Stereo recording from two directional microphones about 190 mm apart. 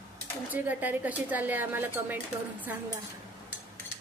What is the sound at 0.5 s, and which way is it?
Speech, 10° right (ahead or behind).